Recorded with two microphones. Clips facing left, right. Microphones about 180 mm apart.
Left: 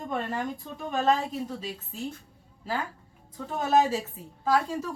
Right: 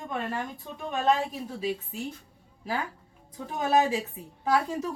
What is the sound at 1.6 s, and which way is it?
Speech, 10° right (ahead or behind).